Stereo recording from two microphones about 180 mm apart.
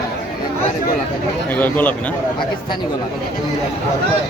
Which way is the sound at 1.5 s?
10° left (ahead or behind).